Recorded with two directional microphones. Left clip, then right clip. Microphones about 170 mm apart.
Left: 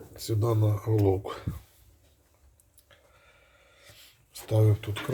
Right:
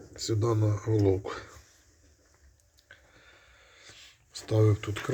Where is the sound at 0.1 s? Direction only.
15° left (ahead or behind).